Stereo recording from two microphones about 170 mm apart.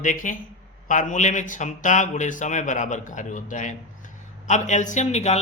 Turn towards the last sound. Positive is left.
turn(degrees=40)  # may be behind; listen again after turning